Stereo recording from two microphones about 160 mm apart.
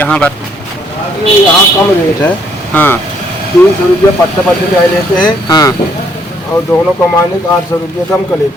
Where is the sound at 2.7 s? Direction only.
10° left (ahead or behind).